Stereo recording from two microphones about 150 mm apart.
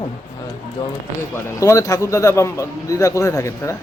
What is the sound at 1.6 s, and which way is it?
A man's voice, 20° left (ahead or behind).